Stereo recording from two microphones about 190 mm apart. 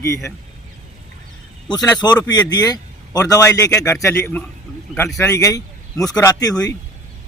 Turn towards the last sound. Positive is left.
turn(degrees=20)  # may be behind; listen again after turning